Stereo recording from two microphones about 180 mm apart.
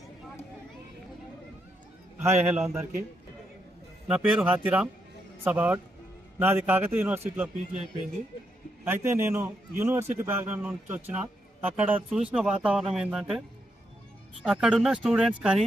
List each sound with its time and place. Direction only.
2.2 s a man's voice: 15° right (ahead or behind)
4.1 s a man's voice: 5° right (ahead or behind)
8.8 s a man's voice: 15° right (ahead or behind)
14.4 s speech: 5° right (ahead or behind)